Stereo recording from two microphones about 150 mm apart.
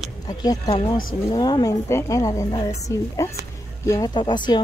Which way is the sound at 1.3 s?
30° left (ahead or behind).